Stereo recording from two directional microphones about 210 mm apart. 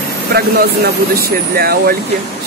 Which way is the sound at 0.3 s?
45° right (ahead or behind).